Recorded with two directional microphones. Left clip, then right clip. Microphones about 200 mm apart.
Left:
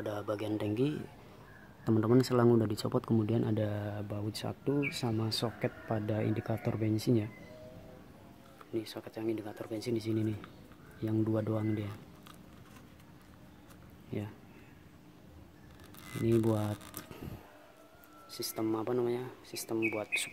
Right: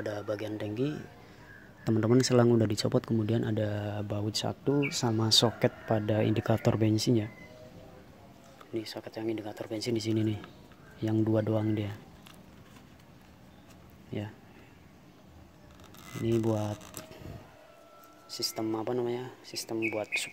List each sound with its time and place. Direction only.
0.0 s speech: centre (ahead or behind)
2.0 s speech: 20° right (ahead or behind)
8.7 s speech: 5° right (ahead or behind)
14.1 s speech: 5° right (ahead or behind)
16.0 s speech: 10° left (ahead or behind)
18.3 s speech: 5° right (ahead or behind)